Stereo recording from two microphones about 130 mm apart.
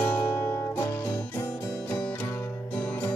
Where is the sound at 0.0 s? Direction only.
15° left (ahead or behind).